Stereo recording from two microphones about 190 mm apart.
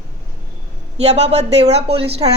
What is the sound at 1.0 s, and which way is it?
A woman's voice, 35° right (ahead or behind).